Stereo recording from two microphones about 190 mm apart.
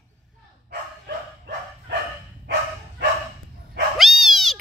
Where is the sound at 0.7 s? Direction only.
55° right (ahead or behind).